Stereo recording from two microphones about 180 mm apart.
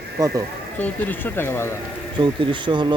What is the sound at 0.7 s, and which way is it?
Speech, 10° left (ahead or behind).